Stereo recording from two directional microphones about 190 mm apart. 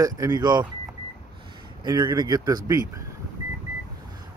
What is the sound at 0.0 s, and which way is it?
Speech, 20° right (ahead or behind).